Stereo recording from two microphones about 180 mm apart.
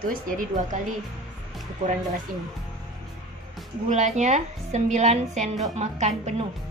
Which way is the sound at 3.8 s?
40° right (ahead or behind).